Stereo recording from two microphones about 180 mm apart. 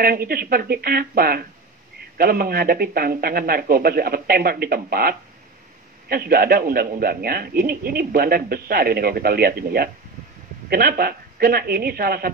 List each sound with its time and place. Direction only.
0.0 s a man's voice: 55° right (ahead or behind)